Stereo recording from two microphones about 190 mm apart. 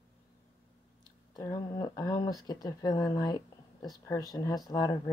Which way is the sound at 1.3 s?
20° left (ahead or behind).